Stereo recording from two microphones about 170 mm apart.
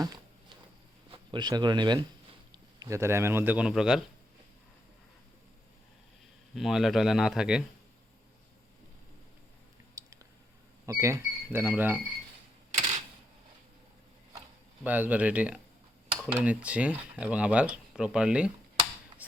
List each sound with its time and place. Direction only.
1.1 s speech: 25° right (ahead or behind); by 4.0 s 5° right (ahead or behind)
6.5 s speech: centre (ahead or behind)
10.8 s speech: 20° right (ahead or behind)
14.8 s speech: 10° right (ahead or behind)